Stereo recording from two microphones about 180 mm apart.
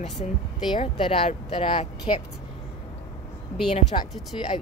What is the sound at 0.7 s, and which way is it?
Speech, 30° left (ahead or behind).